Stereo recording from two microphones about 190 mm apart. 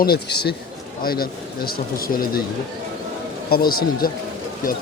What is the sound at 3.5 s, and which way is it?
Speech, 50° left (ahead or behind).